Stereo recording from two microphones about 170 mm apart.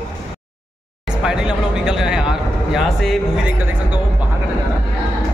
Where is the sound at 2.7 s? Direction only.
Centre (ahead or behind).